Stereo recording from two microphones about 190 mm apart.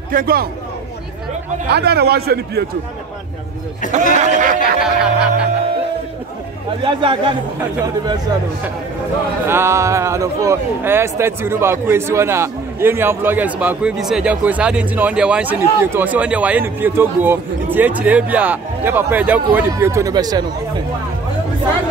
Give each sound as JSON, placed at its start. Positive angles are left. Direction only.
{"t": 0.1, "sound": "a man's voice", "side_deg": -50}
{"t": 1.7, "sound": "a man's voice", "side_deg": -60}
{"t": 3.9, "sound": "speech", "side_deg": -40}
{"t": 4.8, "sound": "music", "side_deg": -5}
{"t": 6.8, "sound": "a man's voice", "side_deg": -25}
{"t": 9.5, "sound": "a man's voice", "side_deg": -15}